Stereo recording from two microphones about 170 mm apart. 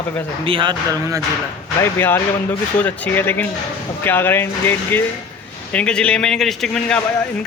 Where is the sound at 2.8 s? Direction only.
10° left (ahead or behind).